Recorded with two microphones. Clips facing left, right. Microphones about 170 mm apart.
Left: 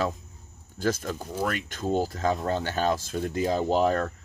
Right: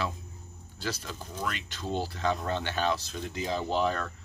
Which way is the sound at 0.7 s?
45° left (ahead or behind).